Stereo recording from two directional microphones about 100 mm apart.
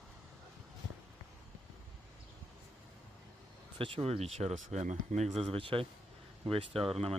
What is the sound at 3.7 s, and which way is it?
Speech, 65° right (ahead or behind).